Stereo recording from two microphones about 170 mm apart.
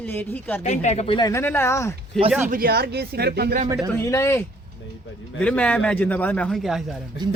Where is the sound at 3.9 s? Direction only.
15° left (ahead or behind); by 7.0 s centre (ahead or behind).